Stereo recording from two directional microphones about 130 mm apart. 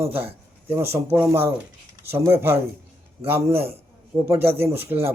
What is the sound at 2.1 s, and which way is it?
Speech, 20° right (ahead or behind).